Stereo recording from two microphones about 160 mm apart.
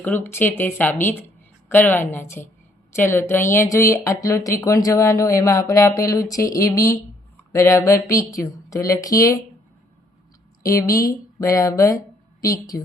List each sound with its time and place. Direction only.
0.0 s speech: 15° left (ahead or behind)
10.7 s speech: 20° left (ahead or behind)